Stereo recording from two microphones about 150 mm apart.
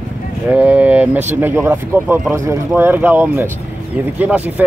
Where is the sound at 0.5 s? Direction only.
10° right (ahead or behind).